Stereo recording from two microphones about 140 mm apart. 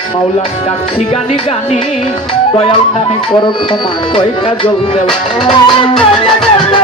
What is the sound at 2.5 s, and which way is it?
Music, 40° left (ahead or behind).